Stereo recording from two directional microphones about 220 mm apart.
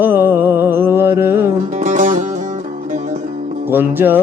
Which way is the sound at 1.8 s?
35° right (ahead or behind).